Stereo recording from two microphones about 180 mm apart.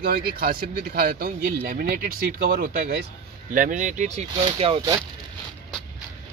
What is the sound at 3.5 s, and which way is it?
Speech, 45° right (ahead or behind).